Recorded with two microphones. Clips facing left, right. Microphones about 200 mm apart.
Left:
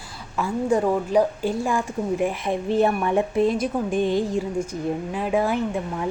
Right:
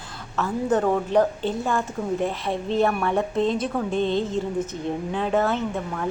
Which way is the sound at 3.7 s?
10° left (ahead or behind).